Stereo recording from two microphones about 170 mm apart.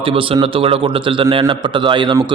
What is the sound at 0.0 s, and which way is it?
A man's voice, 30° right (ahead or behind).